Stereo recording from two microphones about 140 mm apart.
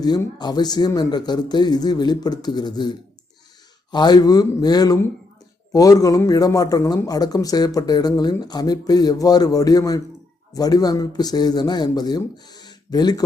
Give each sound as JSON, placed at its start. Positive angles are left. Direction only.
{"t": 0.3, "sound": "a man's voice", "side_deg": 30}
{"t": 3.9, "sound": "a man's voice", "side_deg": 30}